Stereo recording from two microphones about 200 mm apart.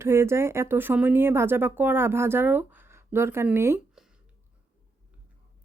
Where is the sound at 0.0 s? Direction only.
10° right (ahead or behind).